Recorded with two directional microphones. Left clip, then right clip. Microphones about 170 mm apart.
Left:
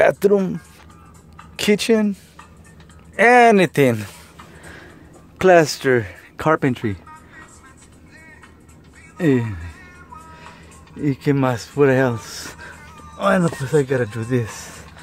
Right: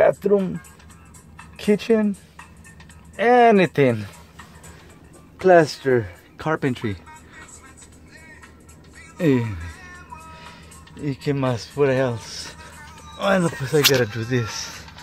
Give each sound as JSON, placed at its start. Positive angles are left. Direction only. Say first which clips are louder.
{"t": 0.0, "sound": "speech", "louder": "left 2 dB", "side_deg": 60}
{"t": 1.6, "sound": "speech", "louder": "left 2 dB", "side_deg": 60}
{"t": 3.2, "sound": "speech", "louder": "left 3 dB", "side_deg": 40}
{"t": 5.4, "sound": "speech", "louder": "left 2 dB", "side_deg": 40}
{"t": 6.3, "sound": "speech", "louder": "left 6 dB", "side_deg": 25}
{"t": 9.2, "sound": "speech", "louder": "left 2 dB", "side_deg": 0}
{"t": 11.0, "sound": "speech", "louder": "left 5 dB", "side_deg": 25}
{"t": 13.2, "sound": "speech", "louder": "left 2 dB", "side_deg": 10}